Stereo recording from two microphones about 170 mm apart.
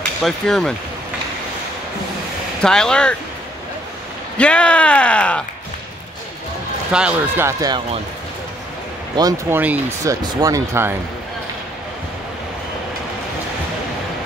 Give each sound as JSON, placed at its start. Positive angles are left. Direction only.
{"t": 0.2, "sound": "speech", "side_deg": 0}
{"t": 2.6, "sound": "speech", "side_deg": 5}
{"t": 4.4, "sound": "speech", "side_deg": 5}
{"t": 6.9, "sound": "speech", "side_deg": -5}
{"t": 9.5, "sound": "speech", "side_deg": -10}